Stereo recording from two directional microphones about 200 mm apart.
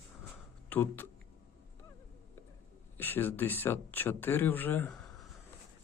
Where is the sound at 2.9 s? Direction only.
10° left (ahead or behind).